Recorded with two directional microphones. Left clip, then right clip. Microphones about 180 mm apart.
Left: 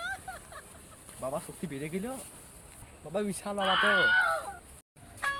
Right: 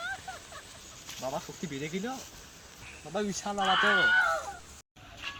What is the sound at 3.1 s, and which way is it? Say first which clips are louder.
Speech: even; 20° left (ahead or behind).